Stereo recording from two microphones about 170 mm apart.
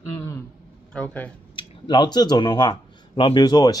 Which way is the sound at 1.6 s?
25° left (ahead or behind).